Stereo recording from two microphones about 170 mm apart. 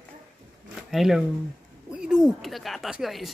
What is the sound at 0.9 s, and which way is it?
Speech, centre (ahead or behind).